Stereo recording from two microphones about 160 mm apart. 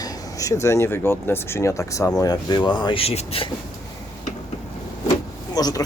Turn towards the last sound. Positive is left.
turn(degrees=25)  # may be behind; listen again after turning